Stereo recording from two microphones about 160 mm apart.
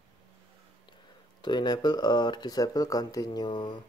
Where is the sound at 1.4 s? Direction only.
30° left (ahead or behind).